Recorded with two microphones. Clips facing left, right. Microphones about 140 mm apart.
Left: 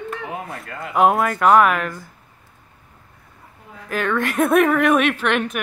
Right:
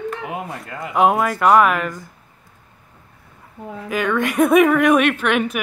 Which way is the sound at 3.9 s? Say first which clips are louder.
Right 1 dB; centre (ahead or behind).